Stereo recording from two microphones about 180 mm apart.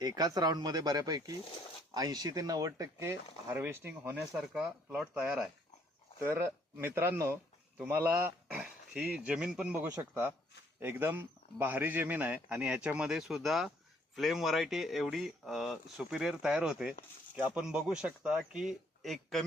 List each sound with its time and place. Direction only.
0.0 s a man's voice: 20° right (ahead or behind); by 19.5 s centre (ahead or behind)